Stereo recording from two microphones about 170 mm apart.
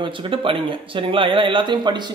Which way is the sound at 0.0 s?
30° right (ahead or behind).